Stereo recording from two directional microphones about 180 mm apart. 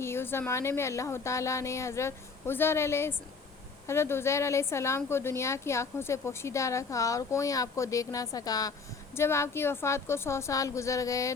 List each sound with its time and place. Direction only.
0.0 s speech: 15° left (ahead or behind)